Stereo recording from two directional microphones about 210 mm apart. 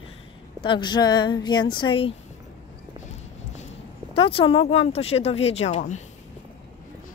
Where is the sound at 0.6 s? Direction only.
20° left (ahead or behind).